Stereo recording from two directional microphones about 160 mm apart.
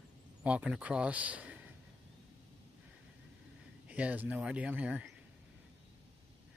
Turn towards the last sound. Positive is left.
turn(degrees=-10)  # may be behind; listen again after turning